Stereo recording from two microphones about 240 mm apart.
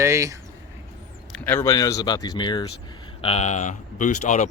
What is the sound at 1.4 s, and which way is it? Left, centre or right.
Speech, centre.